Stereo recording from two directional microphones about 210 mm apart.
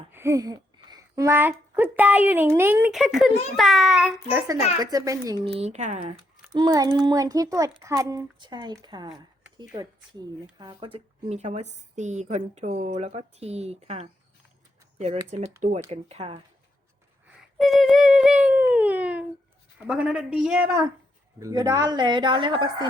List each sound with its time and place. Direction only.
0.1 s speech: 10° right (ahead or behind)
4.8 s speech: 15° right (ahead or behind)
5.5 s a woman's voice: 30° right (ahead or behind)
6.5 s speech: 20° right (ahead or behind)
10.6 s a woman's voice: 20° right (ahead or behind)
17.2 s a sound: centre (ahead or behind)
19.9 s speech: 5° right (ahead or behind)
21.3 s a woman's voice: 15° right (ahead or behind)